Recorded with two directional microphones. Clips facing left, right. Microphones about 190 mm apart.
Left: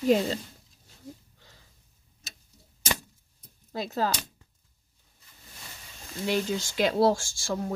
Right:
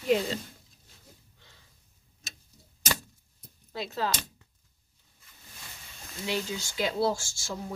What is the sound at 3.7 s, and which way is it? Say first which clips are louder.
Speech: left 3 dB; 40° left (ahead or behind).